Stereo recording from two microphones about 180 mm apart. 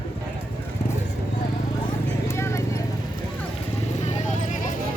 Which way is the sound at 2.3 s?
15° left (ahead or behind).